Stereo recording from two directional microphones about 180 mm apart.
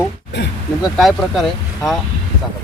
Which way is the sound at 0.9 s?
Centre (ahead or behind).